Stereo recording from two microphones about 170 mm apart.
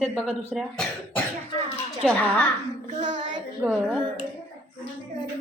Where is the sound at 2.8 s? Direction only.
45° right (ahead or behind).